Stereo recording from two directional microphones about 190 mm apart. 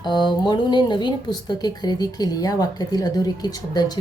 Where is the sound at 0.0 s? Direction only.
20° left (ahead or behind).